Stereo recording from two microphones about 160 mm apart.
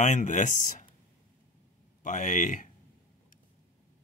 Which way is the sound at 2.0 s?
50° left (ahead or behind).